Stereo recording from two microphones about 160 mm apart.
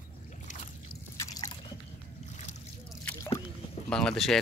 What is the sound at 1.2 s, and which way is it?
Drip, 20° left (ahead or behind).